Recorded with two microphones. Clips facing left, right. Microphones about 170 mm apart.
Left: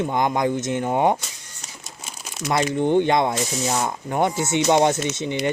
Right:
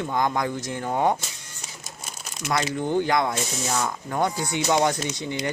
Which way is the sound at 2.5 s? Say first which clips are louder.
Left 5 dB; 20° left (ahead or behind).